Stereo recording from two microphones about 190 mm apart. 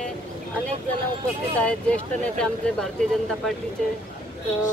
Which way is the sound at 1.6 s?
5° left (ahead or behind).